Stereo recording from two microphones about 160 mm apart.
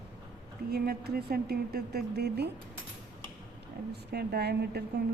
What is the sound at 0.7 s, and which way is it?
A woman's voice, 75° right (ahead or behind).